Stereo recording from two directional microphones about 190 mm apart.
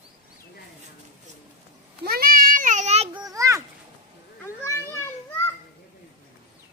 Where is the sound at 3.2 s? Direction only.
15° right (ahead or behind).